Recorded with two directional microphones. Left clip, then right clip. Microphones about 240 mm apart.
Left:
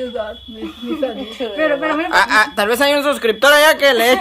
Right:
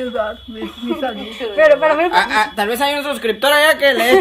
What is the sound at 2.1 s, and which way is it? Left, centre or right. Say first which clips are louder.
A man's voice: left 2 dB; centre.